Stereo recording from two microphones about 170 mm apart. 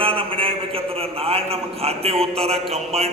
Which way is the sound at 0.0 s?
30° right (ahead or behind).